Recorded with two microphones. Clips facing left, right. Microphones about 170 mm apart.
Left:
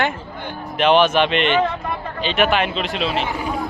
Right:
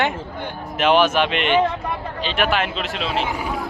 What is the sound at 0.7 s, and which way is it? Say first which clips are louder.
A man's voice: left 2 dB; 5° right (ahead or behind).